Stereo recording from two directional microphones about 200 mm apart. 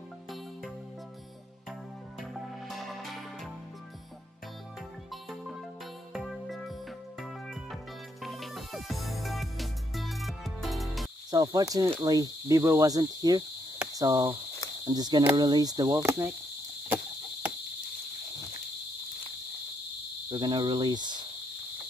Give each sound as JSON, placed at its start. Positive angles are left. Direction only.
{"t": 1.7, "sound": "music", "side_deg": 0}
{"t": 5.1, "sound": "music", "side_deg": 0}
{"t": 11.2, "sound": "cricket", "side_deg": -20}
{"t": 20.2, "sound": "cricket", "side_deg": -20}